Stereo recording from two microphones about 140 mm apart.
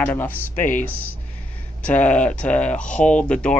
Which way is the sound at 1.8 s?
10° left (ahead or behind).